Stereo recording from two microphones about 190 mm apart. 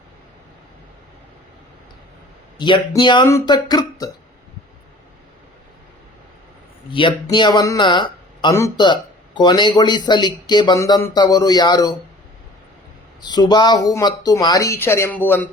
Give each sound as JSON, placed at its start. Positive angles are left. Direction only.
{"t": 2.6, "sound": "speech", "side_deg": 25}
{"t": 6.9, "sound": "speech", "side_deg": 25}
{"t": 13.2, "sound": "speech", "side_deg": 20}